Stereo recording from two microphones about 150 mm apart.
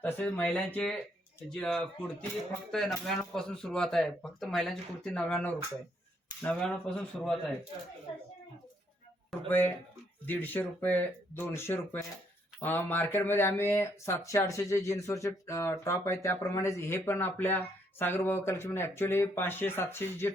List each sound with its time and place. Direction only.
0.0 s speech: 10° left (ahead or behind)
9.5 s speech: 10° left (ahead or behind)